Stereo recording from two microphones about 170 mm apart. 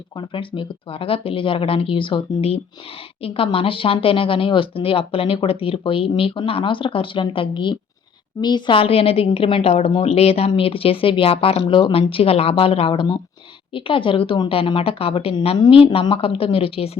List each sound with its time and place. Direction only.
0.2 s a woman's voice: 30° left (ahead or behind)